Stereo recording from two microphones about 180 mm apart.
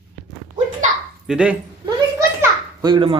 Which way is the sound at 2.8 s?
25° right (ahead or behind).